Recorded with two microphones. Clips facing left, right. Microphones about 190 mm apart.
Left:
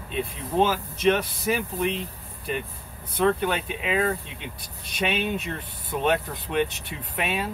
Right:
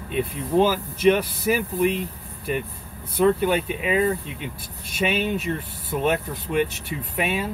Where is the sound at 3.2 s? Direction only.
5° right (ahead or behind).